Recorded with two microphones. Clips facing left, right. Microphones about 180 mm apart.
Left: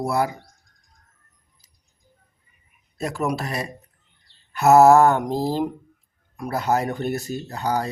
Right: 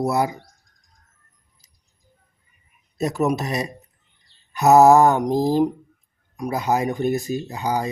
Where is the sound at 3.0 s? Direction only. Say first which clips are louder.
Right 4 dB; 20° right (ahead or behind).